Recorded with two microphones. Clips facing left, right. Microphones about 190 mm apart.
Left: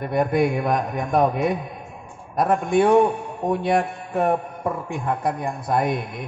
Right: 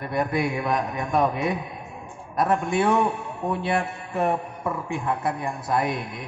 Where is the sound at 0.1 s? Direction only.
50° left (ahead or behind).